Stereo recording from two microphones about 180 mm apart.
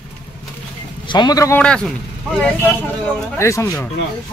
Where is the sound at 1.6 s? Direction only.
5° left (ahead or behind).